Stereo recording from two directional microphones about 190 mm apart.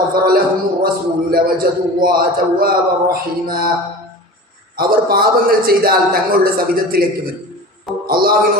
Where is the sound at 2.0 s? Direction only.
50° right (ahead or behind).